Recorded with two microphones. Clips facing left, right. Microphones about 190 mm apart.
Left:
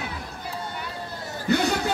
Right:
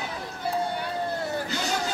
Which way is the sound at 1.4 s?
60° left (ahead or behind).